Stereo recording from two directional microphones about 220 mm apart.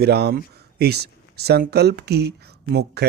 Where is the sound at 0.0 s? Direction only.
45° right (ahead or behind).